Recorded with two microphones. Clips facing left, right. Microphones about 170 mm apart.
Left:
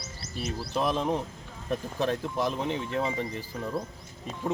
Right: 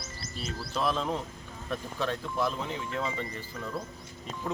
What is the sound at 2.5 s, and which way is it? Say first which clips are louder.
Speech: left 5 dB; 20° left (ahead or behind).